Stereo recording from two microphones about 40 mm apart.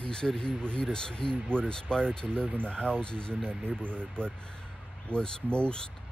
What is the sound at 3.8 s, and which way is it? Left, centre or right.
Speech, right.